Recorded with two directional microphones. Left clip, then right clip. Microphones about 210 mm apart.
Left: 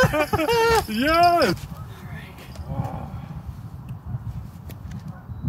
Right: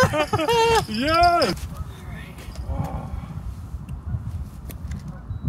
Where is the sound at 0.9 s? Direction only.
20° left (ahead or behind).